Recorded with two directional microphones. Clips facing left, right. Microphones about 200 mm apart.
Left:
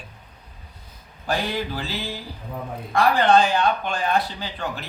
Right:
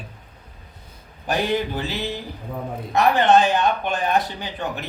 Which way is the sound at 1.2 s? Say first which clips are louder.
Right 3 dB; 20° right (ahead or behind).